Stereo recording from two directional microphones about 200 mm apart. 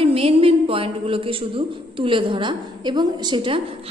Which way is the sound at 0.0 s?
30° right (ahead or behind).